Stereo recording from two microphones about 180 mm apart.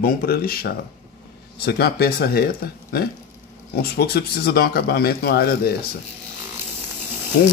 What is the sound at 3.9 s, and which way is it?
Speech, 60° left (ahead or behind).